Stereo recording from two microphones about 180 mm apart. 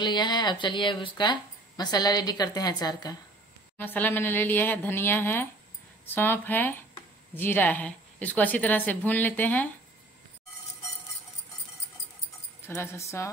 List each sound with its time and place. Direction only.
0.0 s speech: 25° left (ahead or behind)
3.7 s a woman's voice: 10° left (ahead or behind)
12.6 s a woman's voice: 15° left (ahead or behind)